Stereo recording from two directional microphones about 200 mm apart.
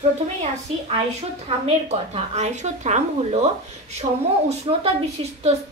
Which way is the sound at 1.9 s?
35° right (ahead or behind).